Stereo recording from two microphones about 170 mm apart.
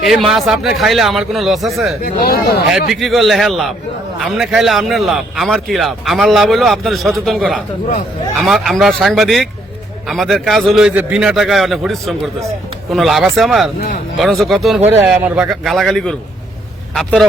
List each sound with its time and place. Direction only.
0.0 s speech: centre (ahead or behind)
2.0 s speech: 60° left (ahead or behind)
2.7 s speech: centre (ahead or behind)